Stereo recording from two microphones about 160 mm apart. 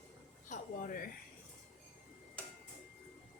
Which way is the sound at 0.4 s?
55° left (ahead or behind).